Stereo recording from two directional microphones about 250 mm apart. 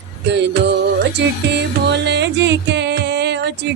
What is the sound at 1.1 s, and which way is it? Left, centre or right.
Music, right.